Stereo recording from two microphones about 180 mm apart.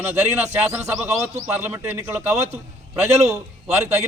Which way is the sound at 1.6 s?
10° right (ahead or behind).